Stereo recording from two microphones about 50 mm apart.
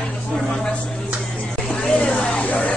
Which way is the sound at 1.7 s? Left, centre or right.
Centre.